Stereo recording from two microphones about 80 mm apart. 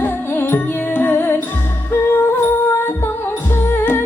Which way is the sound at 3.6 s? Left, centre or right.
Left.